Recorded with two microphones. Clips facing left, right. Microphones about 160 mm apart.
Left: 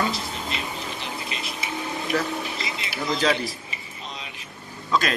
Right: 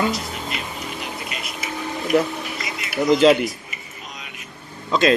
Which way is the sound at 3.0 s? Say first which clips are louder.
Right 10 dB; 20° right (ahead or behind).